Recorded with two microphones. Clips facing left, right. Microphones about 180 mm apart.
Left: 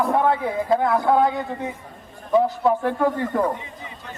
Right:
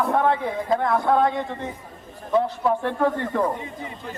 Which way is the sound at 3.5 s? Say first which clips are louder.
Right 4 dB; 50° right (ahead or behind).